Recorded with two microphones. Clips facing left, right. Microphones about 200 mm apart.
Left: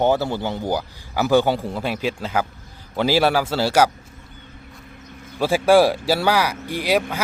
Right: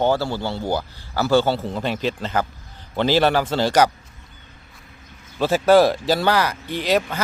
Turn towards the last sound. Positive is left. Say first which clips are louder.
# even
turn(degrees=10)  # may be behind; listen again after turning